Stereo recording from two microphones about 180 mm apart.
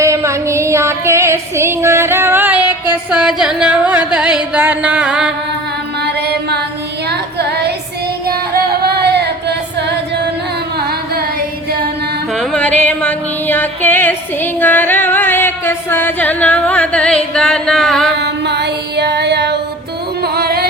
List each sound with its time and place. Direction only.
0.0 s female singing: 15° right (ahead or behind)
6.0 s music: 65° right (ahead or behind)
7.1 s child singing: 65° right (ahead or behind)
8.5 s singing: 60° right (ahead or behind)
10.8 s carnatic music: 60° right (ahead or behind)
12.3 s music: 5° left (ahead or behind)
18.2 s female singing: 70° right (ahead or behind)
20.2 s music: 60° right (ahead or behind)